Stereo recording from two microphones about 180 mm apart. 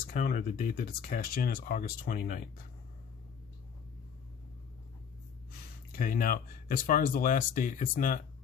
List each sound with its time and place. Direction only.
0.0 s speech: 50° left (ahead or behind)
5.9 s speech: 50° left (ahead or behind)